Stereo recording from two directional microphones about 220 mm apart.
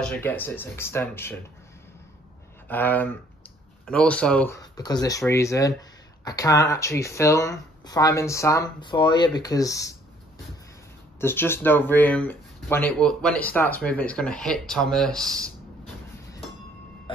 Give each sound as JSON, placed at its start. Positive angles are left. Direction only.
{"t": 0.0, "sound": "speech", "side_deg": 5}
{"t": 2.7, "sound": "speech", "side_deg": 10}
{"t": 11.1, "sound": "speech", "side_deg": 10}